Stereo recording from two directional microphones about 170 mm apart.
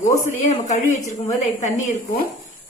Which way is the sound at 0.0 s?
45° left (ahead or behind).